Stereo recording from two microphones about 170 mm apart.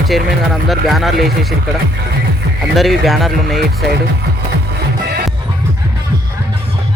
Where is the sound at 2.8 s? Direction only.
Centre (ahead or behind).